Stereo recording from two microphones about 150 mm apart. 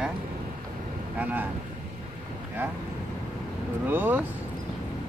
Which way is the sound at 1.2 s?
10° right (ahead or behind).